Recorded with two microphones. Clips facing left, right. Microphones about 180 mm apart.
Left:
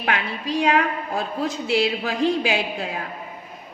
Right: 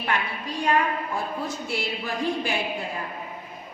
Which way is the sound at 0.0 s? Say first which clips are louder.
Left 3 dB; 90° left.